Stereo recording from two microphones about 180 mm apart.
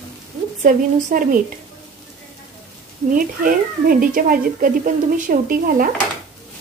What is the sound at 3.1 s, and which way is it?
Speech, 50° right (ahead or behind).